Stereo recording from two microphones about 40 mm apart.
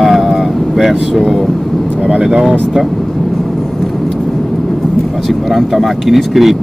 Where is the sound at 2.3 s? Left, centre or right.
Centre.